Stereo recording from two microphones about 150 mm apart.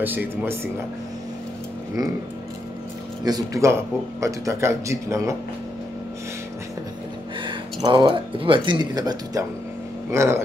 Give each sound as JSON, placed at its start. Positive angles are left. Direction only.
{"t": 0.0, "sound": "speech", "side_deg": -15}
{"t": 3.3, "sound": "speech", "side_deg": -25}
{"t": 7.4, "sound": "speech", "side_deg": -30}